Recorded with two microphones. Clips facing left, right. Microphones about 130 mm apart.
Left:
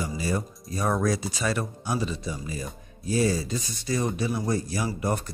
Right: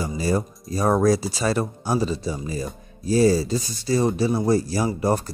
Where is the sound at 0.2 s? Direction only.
35° right (ahead or behind).